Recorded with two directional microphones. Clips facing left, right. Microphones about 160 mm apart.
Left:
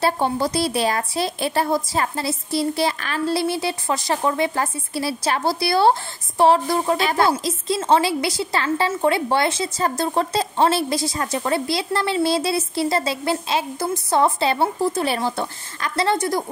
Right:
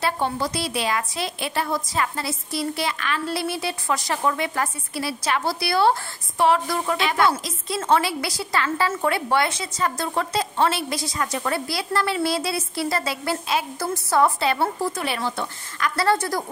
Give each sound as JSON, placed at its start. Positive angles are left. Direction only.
{"t": 0.0, "sound": "speech", "side_deg": 35}
{"t": 15.0, "sound": "speech", "side_deg": 35}
{"t": 16.0, "sound": "speech", "side_deg": 20}